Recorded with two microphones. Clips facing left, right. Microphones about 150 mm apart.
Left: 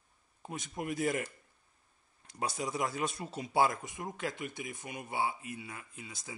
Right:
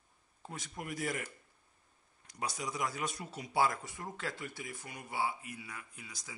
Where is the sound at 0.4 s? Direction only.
20° left (ahead or behind).